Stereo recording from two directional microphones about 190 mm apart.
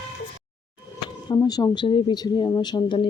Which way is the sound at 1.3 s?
20° left (ahead or behind).